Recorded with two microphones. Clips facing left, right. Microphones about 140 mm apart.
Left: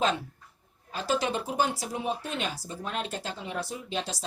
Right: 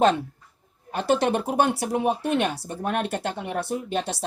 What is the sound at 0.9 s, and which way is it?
Speech, 60° right (ahead or behind).